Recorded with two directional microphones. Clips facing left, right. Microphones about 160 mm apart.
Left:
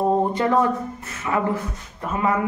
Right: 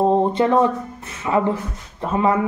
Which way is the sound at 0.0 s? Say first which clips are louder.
Right 3 dB; 25° right (ahead or behind).